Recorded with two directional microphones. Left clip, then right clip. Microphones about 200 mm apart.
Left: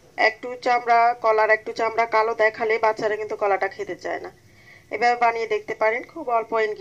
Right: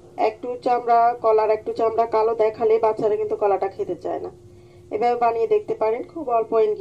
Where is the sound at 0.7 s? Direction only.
35° left (ahead or behind).